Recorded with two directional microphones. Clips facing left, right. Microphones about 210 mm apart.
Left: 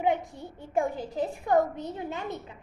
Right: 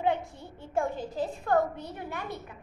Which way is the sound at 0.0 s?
15° left (ahead or behind).